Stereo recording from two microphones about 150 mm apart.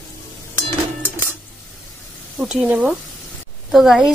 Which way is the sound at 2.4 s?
5° right (ahead or behind).